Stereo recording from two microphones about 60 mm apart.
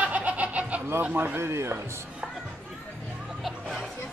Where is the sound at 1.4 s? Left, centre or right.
Right.